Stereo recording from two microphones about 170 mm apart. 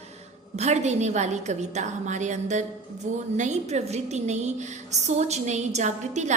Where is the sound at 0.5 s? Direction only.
40° right (ahead or behind).